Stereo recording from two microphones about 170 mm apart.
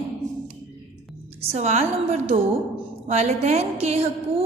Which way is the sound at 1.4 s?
40° right (ahead or behind).